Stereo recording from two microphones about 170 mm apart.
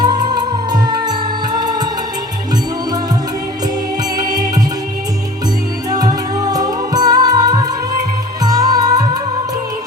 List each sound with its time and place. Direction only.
0.0 s music: 25° right (ahead or behind)
4.2 s music: 20° right (ahead or behind)
5.9 s music: 20° right (ahead or behind)